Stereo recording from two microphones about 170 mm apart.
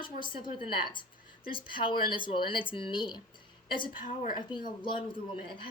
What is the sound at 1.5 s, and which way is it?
Speech, 30° left (ahead or behind).